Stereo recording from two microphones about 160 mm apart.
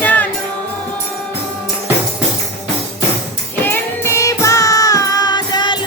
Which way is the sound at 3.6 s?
15° left (ahead or behind).